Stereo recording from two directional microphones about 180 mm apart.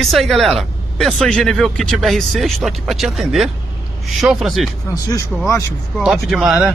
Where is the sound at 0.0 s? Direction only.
Centre (ahead or behind).